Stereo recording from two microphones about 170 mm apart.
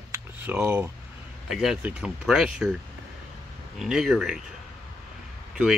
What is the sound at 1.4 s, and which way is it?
Speech, 5° right (ahead or behind).